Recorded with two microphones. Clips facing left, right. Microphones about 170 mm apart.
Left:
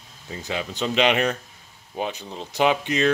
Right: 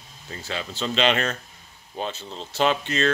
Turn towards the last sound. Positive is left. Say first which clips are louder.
# left 2 dB
turn(degrees=15)  # may be behind; listen again after turning